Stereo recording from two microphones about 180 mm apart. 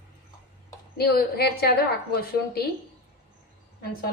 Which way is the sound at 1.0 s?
60° left (ahead or behind).